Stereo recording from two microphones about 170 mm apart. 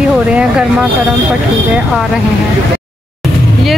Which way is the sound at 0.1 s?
5° right (ahead or behind).